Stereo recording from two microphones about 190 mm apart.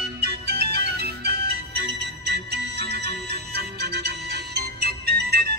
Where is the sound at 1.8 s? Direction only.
60° right (ahead or behind).